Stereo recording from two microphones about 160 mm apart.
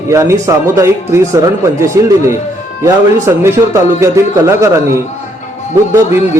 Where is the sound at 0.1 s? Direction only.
20° right (ahead or behind).